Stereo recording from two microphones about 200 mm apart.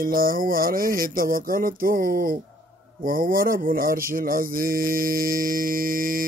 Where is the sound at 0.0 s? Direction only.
45° right (ahead or behind).